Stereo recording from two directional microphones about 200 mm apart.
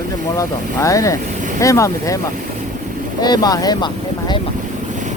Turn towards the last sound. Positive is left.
turn(degrees=20)  # may be behind; listen again after turning